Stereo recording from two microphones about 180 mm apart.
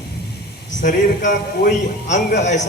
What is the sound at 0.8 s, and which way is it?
A man's voice, 45° left (ahead or behind).